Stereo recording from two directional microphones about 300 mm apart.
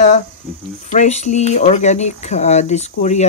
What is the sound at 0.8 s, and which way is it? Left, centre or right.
Speech, left.